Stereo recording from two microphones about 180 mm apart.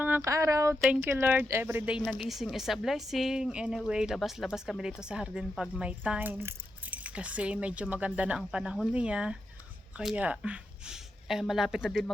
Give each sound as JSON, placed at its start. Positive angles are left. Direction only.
{"t": 0.0, "sound": "speech", "side_deg": -15}
{"t": 0.8, "sound": "a woman's voice", "side_deg": 0}
{"t": 1.0, "sound": "a woman's voice", "side_deg": -10}